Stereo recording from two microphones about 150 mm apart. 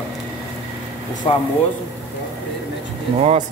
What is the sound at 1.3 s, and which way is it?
Speech, 40° left (ahead or behind).